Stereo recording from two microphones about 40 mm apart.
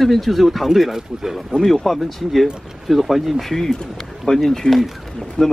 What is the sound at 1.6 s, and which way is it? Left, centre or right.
Speech, centre.